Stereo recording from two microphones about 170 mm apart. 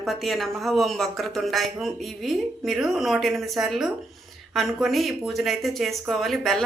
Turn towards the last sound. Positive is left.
turn(degrees=0)  # may be behind; listen again after turning